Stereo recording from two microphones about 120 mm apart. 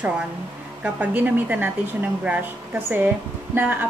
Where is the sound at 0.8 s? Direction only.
15° right (ahead or behind).